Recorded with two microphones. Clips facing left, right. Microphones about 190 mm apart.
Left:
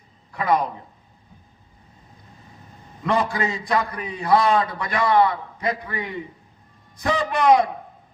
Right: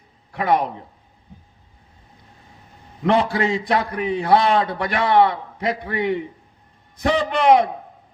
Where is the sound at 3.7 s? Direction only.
60° right (ahead or behind).